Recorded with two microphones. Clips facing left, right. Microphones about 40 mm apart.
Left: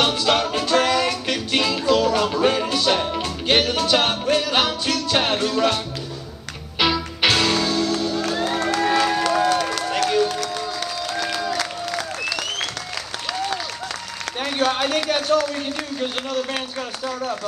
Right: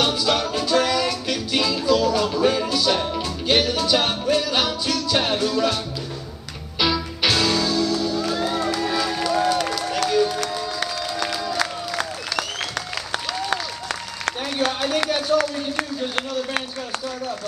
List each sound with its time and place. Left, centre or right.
0.0 s music: left
6.8 s music: left
8.7 s run: left
9.9 s music: left
10.4 s music: right
14.6 s a sound: left